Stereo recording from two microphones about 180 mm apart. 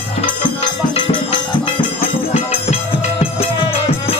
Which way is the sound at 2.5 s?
35° left (ahead or behind).